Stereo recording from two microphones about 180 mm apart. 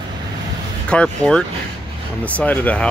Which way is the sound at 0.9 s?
5° left (ahead or behind).